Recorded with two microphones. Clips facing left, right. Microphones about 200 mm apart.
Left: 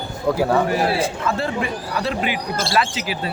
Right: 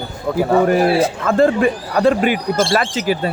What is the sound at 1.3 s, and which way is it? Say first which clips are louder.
Speech: right 9 dB; 50° right (ahead or behind).